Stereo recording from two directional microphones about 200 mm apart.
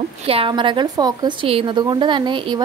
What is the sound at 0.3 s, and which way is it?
A woman's voice, 25° right (ahead or behind).